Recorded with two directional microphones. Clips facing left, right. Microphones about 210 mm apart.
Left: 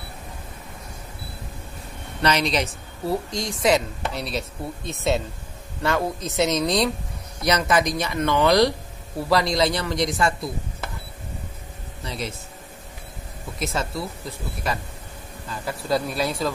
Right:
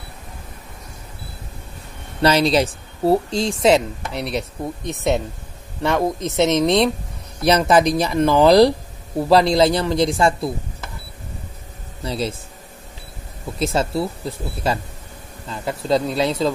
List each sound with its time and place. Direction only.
2.2 s speech: 30° right (ahead or behind)
4.1 s speech: 65° right (ahead or behind)
4.4 s speech: 15° right (ahead or behind)
12.0 s speech: 30° right (ahead or behind)
13.6 s speech: 30° right (ahead or behind)